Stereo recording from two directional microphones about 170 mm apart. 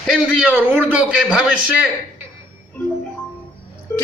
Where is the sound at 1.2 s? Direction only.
5° right (ahead or behind).